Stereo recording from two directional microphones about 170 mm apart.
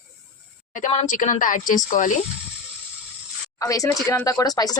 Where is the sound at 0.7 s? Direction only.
45° left (ahead or behind).